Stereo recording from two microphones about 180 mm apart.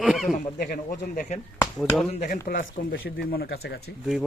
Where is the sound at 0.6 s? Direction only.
50° left (ahead or behind).